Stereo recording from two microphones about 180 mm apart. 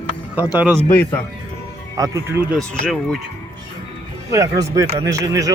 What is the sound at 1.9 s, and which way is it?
Speech, 15° right (ahead or behind).